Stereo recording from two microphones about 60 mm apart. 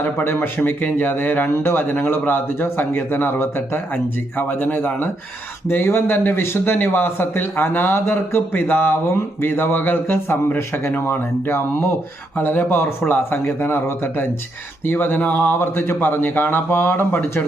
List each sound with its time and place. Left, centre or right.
0.0 s speech: left
15.2 s a sound: left
15.9 s speech: left